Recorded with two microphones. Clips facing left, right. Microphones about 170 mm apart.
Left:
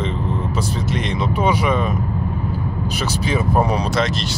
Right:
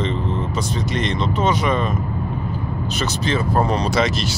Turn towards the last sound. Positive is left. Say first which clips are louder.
# right 1 dB
turn(degrees=-5)  # may be behind; listen again after turning